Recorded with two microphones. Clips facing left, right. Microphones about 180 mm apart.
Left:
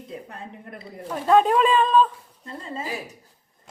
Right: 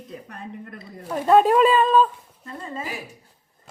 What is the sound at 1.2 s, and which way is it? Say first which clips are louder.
Speech: right 2 dB; 5° right (ahead or behind).